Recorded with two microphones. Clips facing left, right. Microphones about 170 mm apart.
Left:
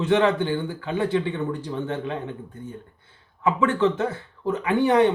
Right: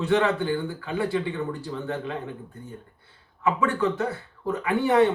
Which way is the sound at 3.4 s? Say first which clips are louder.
Left 3 dB; 20° left (ahead or behind).